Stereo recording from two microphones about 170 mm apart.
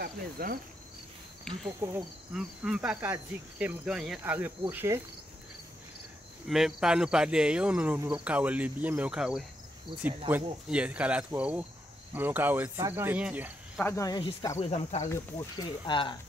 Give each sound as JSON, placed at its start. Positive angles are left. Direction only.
{"t": 0.0, "sound": "cricket", "side_deg": -55}
{"t": 1.8, "sound": "speech", "side_deg": -15}
{"t": 6.4, "sound": "speech", "side_deg": 0}
{"t": 13.7, "sound": "speech", "side_deg": 15}
{"t": 14.6, "sound": "speech", "side_deg": 40}
{"t": 15.9, "sound": "speech", "side_deg": 25}